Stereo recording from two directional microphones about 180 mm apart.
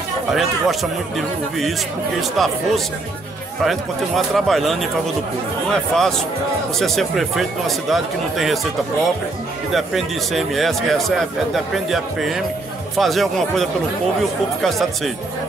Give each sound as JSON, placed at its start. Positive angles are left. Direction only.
{"t": 0.3, "sound": "a man's voice", "side_deg": 0}
{"t": 9.8, "sound": "a man's voice", "side_deg": 0}